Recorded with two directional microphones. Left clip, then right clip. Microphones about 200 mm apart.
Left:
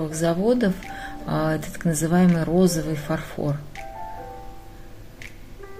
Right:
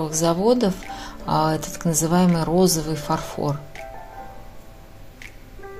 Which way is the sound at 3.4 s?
30° right (ahead or behind).